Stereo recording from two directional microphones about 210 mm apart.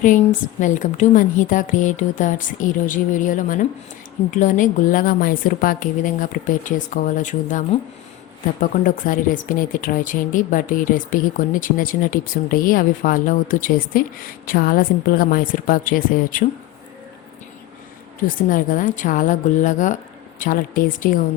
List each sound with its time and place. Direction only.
0.6 s speech: 35° left (ahead or behind)
18.4 s speech: 40° left (ahead or behind)